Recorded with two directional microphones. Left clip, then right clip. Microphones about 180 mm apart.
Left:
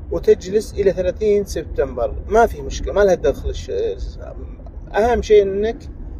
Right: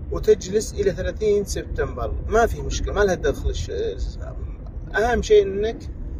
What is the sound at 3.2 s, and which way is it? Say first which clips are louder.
Speech: left 5 dB; 40° left (ahead or behind).